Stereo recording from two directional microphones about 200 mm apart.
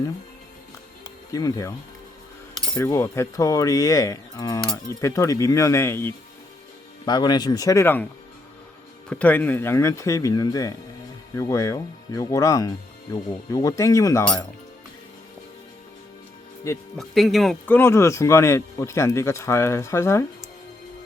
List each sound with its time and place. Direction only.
1.3 s speech: 15° left (ahead or behind)
9.0 s speech: 5° left (ahead or behind)
16.7 s speech: 15° left (ahead or behind)
17.0 s speech: centre (ahead or behind)